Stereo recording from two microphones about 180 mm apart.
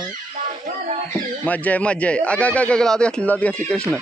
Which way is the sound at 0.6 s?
40° right (ahead or behind).